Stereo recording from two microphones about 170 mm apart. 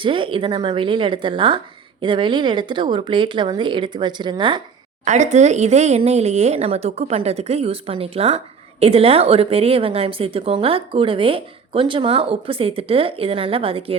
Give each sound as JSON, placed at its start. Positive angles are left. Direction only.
{"t": 0.0, "sound": "speech", "side_deg": -30}
{"t": 5.0, "sound": "a woman's voice", "side_deg": -45}